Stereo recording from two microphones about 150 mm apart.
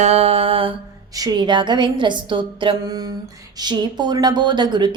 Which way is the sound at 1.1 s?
25° right (ahead or behind).